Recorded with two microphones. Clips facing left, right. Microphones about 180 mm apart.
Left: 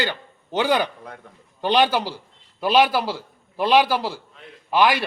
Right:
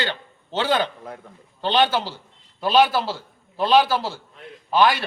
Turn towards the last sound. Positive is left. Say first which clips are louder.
# even
turn(degrees=15)  # may be behind; listen again after turning